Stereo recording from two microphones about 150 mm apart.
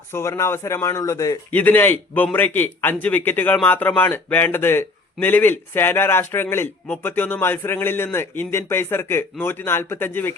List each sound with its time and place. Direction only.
0.1 s speech: 20° left (ahead or behind)
1.5 s a man's voice: 10° left (ahead or behind)